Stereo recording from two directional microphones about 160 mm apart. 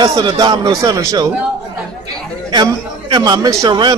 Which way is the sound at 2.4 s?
25° right (ahead or behind).